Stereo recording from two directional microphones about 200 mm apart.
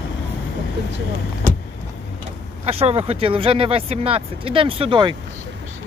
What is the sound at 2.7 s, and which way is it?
Speech, 30° right (ahead or behind).